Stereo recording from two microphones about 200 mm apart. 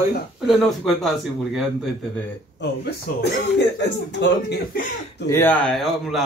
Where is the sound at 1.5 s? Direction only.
Centre (ahead or behind).